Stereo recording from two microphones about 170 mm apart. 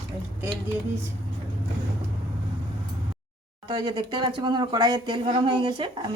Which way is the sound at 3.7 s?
25° right (ahead or behind).